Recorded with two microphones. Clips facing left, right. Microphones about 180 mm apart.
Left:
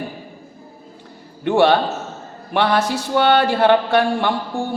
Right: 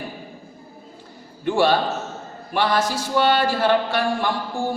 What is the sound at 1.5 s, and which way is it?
A man's voice, 60° left (ahead or behind).